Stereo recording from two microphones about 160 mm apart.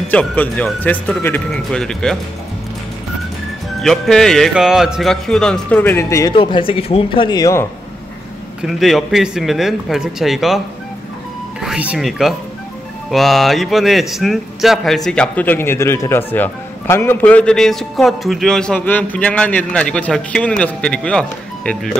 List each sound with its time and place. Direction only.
0.1 s speech: 10° left (ahead or behind)
3.8 s a man's voice: centre (ahead or behind); by 6.3 s 20° left (ahead or behind)
6.3 s speech: 30° left (ahead or behind)
8.6 s a man's voice: centre (ahead or behind)
11.6 s a man's voice: 5° right (ahead or behind)